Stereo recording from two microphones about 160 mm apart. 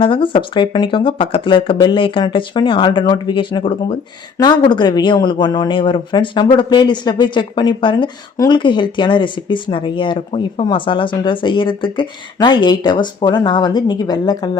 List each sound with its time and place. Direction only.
0.0 s speech: 30° left (ahead or behind)